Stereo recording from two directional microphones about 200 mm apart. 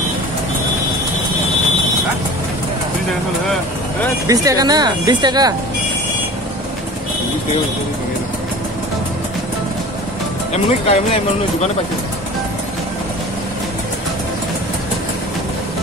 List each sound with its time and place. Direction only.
4.3 s speech: 15° right (ahead or behind)
10.5 s speech: 30° left (ahead or behind)